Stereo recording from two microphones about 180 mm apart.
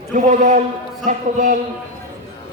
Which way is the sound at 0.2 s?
45° right (ahead or behind).